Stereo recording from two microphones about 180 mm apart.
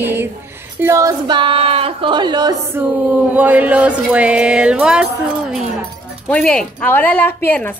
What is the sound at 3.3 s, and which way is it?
Chant, 10° right (ahead or behind).